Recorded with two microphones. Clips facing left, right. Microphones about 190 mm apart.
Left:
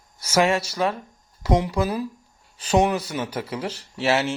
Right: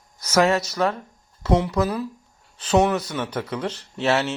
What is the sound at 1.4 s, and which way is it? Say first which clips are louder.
Speech: right 1 dB; 10° left (ahead or behind).